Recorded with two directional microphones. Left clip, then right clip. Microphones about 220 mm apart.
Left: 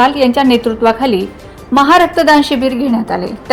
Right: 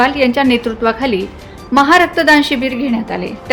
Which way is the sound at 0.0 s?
5° left (ahead or behind).